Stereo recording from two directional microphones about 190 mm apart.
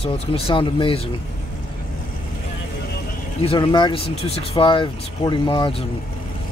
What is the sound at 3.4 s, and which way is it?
Speech, 25° left (ahead or behind).